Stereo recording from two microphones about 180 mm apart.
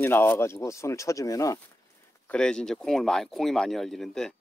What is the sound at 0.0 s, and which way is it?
Speech, 10° left (ahead or behind).